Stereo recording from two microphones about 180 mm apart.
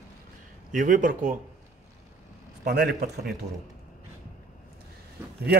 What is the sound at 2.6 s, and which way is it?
Speech, 65° right (ahead or behind).